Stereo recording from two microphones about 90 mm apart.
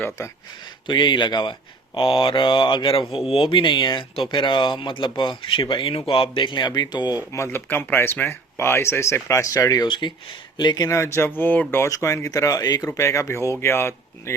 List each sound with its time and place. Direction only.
0.9 s speech: 60° left (ahead or behind); by 3.2 s 75° left (ahead or behind)
3.2 s speech: 90° left; by 7.2 s 50° left (ahead or behind)
7.3 s speech: 30° left (ahead or behind)
9.8 s speech: 60° left (ahead or behind)
10.8 s speech: 35° left (ahead or behind)
11.9 s speech: 35° left (ahead or behind)